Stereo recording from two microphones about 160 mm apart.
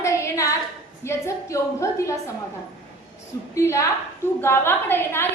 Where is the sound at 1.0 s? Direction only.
15° left (ahead or behind).